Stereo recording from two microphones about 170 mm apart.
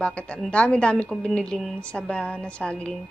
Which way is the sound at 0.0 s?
5° left (ahead or behind).